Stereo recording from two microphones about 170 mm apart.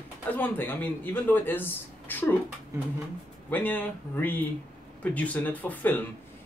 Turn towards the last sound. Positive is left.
turn(degrees=10)  # may be behind; listen again after turning